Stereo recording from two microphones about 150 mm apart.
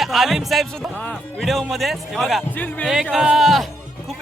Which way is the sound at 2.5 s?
10° left (ahead or behind).